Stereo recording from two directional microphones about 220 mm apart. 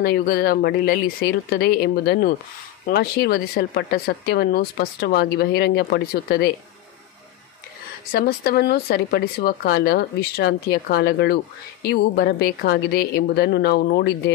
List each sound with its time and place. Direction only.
0.0 s speech: 40° left (ahead or behind)
8.1 s speech: 45° left (ahead or behind)